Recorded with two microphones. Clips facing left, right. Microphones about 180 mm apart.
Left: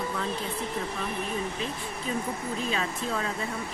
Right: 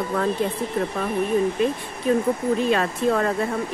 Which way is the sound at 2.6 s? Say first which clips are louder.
Right 9 dB; 60° right (ahead or behind).